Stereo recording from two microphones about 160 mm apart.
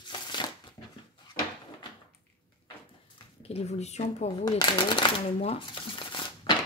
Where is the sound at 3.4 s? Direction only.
40° left (ahead or behind).